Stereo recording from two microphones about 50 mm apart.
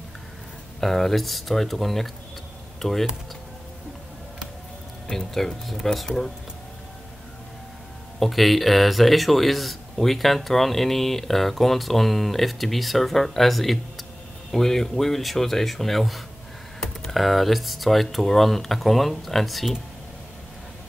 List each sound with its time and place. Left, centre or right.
0.7 s speech: centre
5.1 s speech: centre
8.2 s speech: centre